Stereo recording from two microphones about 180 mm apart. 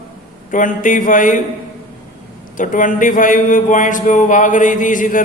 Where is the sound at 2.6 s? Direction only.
45° left (ahead or behind).